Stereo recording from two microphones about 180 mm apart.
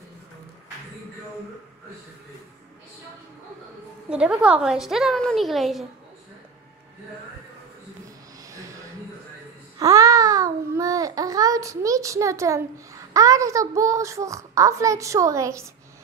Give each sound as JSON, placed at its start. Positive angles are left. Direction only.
{"t": 4.1, "sound": "a woman's voice", "side_deg": -5}
{"t": 8.5, "sound": "a sound", "side_deg": -20}
{"t": 9.8, "sound": "a child's voice", "side_deg": -20}